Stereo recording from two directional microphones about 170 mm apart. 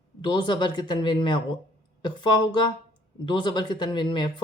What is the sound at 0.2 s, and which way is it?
Speech, 25° left (ahead or behind).